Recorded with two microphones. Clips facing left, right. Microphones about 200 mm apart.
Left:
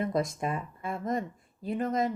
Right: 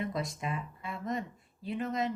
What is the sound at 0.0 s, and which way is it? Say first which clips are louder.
Speech: left 6 dB; 45° left (ahead or behind).